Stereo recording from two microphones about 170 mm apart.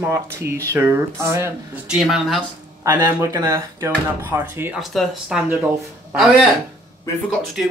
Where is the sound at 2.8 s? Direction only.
15° right (ahead or behind).